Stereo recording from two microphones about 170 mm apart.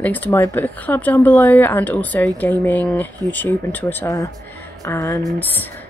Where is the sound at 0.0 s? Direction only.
10° left (ahead or behind).